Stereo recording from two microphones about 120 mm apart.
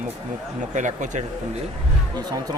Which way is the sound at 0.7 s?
85° right.